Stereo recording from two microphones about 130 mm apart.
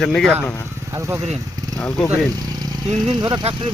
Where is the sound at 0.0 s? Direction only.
5° left (ahead or behind).